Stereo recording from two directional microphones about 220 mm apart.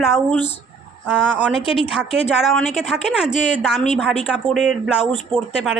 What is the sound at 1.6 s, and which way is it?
Speech, 25° left (ahead or behind).